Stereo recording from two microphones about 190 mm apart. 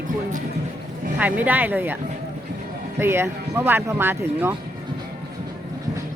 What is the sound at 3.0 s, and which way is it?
Speech, 15° right (ahead or behind).